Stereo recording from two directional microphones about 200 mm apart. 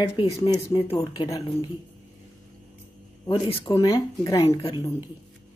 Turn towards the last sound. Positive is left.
turn(degrees=30)  # may be behind; listen again after turning